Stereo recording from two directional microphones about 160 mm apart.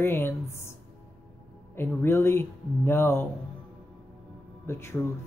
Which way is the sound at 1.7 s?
15° left (ahead or behind).